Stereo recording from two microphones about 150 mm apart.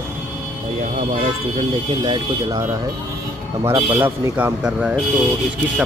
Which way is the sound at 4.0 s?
10° right (ahead or behind).